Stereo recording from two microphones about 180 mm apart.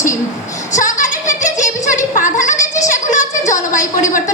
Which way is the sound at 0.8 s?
45° left (ahead or behind).